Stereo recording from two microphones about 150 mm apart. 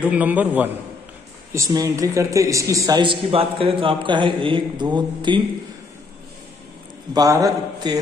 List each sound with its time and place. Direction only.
0.0 s a man's voice: 10° right (ahead or behind)
1.5 s a man's voice: 20° right (ahead or behind)
3.0 s a man's voice: 35° right (ahead or behind)
7.2 s a man's voice: 20° right (ahead or behind)